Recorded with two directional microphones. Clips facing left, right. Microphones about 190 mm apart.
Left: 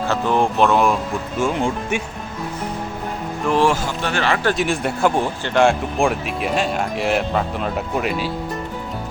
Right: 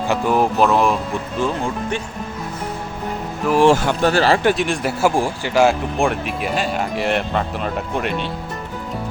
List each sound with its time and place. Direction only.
0.1 s speech: 10° right (ahead or behind)
1.4 s speech: 15° left (ahead or behind)
3.5 s speech: 5° right (ahead or behind)
4.0 s speech: 35° right (ahead or behind)
4.5 s speech: centre (ahead or behind)